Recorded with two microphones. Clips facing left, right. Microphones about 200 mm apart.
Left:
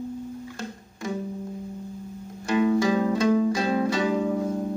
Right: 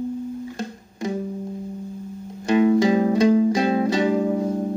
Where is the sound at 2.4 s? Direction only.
20° right (ahead or behind).